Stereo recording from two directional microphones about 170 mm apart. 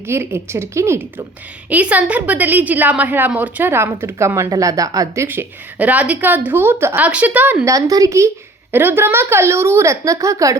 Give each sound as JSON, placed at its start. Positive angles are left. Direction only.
{"t": 0.1, "sound": "a woman's voice", "side_deg": -15}